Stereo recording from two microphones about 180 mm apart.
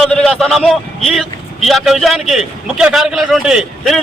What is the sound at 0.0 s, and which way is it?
Vehicle, 5° left (ahead or behind).